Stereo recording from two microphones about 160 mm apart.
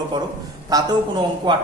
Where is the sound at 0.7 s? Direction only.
25° right (ahead or behind).